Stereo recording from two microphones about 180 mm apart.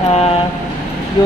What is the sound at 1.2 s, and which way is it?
Speech, 25° left (ahead or behind).